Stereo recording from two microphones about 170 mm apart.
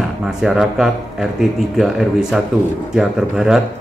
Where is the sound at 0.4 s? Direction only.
Centre (ahead or behind).